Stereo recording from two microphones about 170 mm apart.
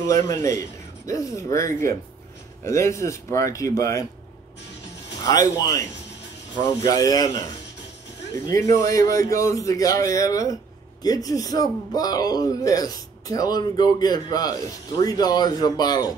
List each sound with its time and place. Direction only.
0.0 s speech: 20° left (ahead or behind)
5.2 s a man's voice: 20° left (ahead or behind)
8.5 s a man's voice: 20° left (ahead or behind)